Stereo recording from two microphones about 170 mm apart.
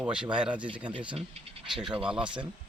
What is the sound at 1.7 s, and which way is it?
Speech, 5° right (ahead or behind).